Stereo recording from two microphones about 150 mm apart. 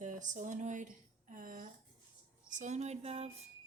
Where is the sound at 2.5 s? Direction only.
55° right (ahead or behind).